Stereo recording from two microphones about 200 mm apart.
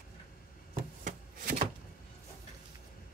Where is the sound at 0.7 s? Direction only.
45° right (ahead or behind).